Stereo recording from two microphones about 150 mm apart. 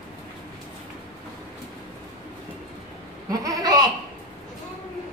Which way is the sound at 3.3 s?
25° right (ahead or behind).